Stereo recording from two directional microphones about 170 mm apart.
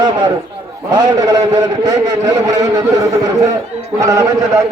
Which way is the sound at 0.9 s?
20° right (ahead or behind).